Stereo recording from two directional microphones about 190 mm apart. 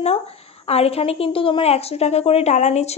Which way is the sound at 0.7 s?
30° left (ahead or behind).